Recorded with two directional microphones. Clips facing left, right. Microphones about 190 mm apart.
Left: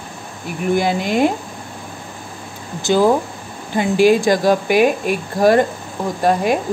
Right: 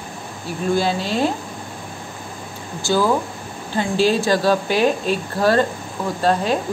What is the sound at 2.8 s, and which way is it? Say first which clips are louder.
Speech: left 4 dB; 20° left (ahead or behind).